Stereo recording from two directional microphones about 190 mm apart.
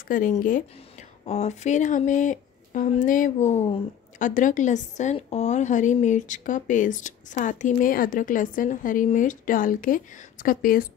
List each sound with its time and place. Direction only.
0.1 s a woman's voice: 45° left (ahead or behind)